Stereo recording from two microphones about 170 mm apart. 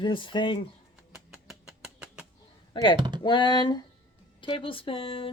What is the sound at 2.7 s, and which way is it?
Speech, 30° left (ahead or behind).